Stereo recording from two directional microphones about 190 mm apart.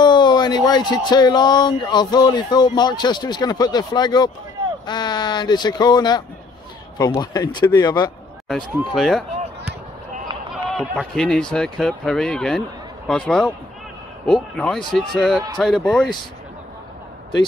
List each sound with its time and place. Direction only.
0.0 s speech: 25° left (ahead or behind)
8.9 s speech: centre (ahead or behind)
10.5 s speech: centre (ahead or behind)